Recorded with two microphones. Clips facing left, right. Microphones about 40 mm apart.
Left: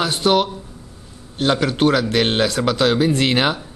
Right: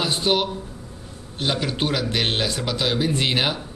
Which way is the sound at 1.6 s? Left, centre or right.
Left.